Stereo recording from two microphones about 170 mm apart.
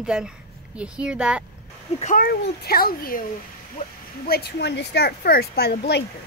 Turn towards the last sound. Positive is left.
turn(degrees=75)  # may be behind; listen again after turning